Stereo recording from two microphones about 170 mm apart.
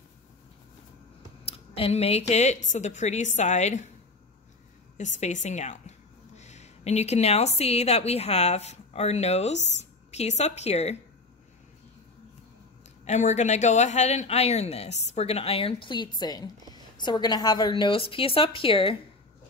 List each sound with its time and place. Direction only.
1.4 s a woman's voice: 35° left (ahead or behind)
4.9 s a woman's voice: 45° left (ahead or behind)
13.0 s speech: 45° left (ahead or behind)